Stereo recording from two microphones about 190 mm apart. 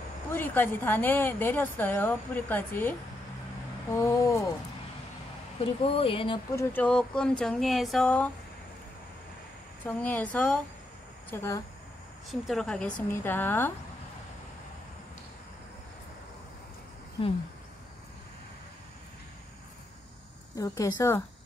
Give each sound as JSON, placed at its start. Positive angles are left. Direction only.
{"t": 0.3, "sound": "a woman's voice", "side_deg": 10}
{"t": 5.6, "sound": "speech", "side_deg": 30}
{"t": 6.5, "sound": "speech", "side_deg": 10}
{"t": 9.8, "sound": "a woman's voice", "side_deg": 5}
{"t": 12.3, "sound": "a woman's voice", "side_deg": 0}
{"t": 20.5, "sound": "a woman's voice", "side_deg": 20}